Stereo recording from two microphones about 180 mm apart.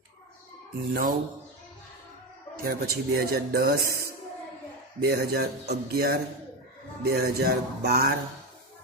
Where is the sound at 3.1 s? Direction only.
60° right (ahead or behind).